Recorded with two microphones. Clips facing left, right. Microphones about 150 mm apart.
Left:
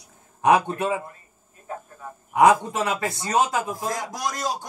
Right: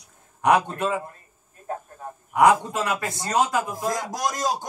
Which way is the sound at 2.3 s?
20° left (ahead or behind).